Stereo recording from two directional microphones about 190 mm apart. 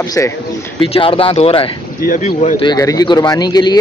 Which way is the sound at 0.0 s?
20° left (ahead or behind).